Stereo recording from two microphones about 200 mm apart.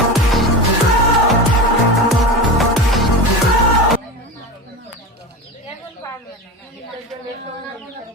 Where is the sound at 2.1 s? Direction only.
Centre (ahead or behind).